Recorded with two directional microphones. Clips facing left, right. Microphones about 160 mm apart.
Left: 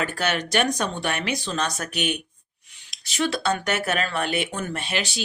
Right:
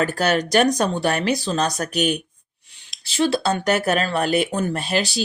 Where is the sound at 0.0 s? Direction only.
40° right (ahead or behind).